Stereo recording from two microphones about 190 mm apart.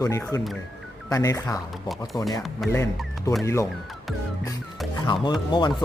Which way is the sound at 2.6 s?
Centre (ahead or behind).